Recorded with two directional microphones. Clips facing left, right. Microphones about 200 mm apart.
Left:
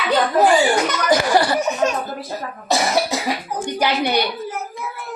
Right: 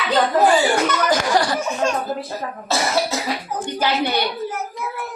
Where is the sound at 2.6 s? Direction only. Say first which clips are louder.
Left 2 dB; 15° left (ahead or behind).